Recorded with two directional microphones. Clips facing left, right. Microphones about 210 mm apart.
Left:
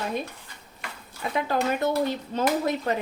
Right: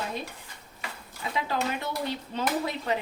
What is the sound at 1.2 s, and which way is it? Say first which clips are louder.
Speech: left 4 dB; 55° left (ahead or behind).